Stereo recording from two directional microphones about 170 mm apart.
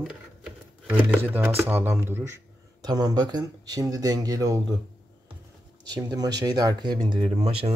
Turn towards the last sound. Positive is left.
turn(degrees=-35)  # may be behind; listen again after turning